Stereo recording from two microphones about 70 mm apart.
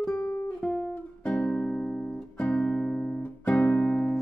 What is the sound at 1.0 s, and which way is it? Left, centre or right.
Music, centre.